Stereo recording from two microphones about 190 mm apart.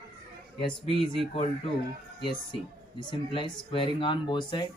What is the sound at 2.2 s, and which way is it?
Speech, 25° left (ahead or behind).